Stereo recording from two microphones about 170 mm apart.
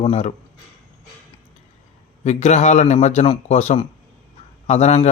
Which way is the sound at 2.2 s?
40° left (ahead or behind).